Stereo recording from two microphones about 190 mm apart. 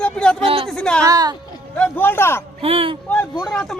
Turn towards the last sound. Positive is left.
turn(degrees=0)  # may be behind; listen again after turning